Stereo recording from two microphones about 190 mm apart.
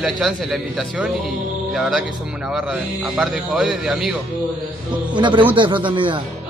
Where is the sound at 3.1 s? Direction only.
Centre (ahead or behind).